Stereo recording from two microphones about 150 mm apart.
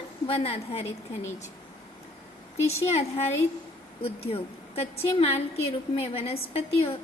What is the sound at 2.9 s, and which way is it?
A woman's voice, 45° left (ahead or behind).